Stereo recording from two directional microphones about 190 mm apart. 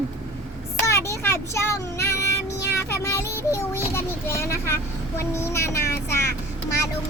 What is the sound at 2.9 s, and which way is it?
A child's voice, 15° left (ahead or behind).